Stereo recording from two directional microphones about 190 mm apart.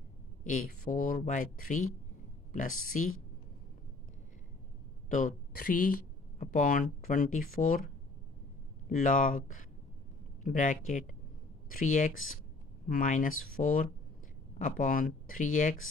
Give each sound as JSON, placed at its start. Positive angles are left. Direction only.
{"t": 0.4, "sound": "speech", "side_deg": 40}
{"t": 5.1, "sound": "speech", "side_deg": 45}